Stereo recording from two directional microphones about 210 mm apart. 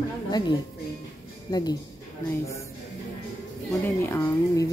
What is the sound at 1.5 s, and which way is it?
Speech, 20° left (ahead or behind).